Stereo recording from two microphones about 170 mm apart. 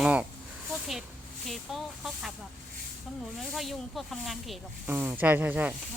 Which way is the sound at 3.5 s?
Centre (ahead or behind).